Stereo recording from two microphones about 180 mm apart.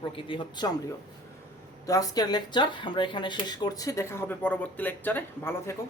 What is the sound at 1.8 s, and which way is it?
Speech, 20° left (ahead or behind).